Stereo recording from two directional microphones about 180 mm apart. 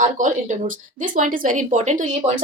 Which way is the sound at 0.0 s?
45° right (ahead or behind).